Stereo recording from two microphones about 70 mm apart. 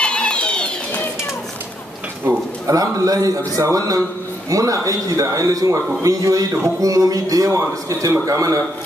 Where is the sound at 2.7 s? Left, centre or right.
Right.